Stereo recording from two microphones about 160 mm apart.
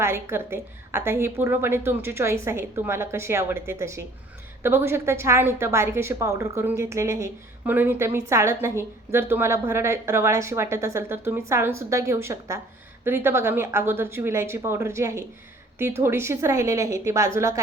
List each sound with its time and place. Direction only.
0.0 s a woman's voice: 15° right (ahead or behind)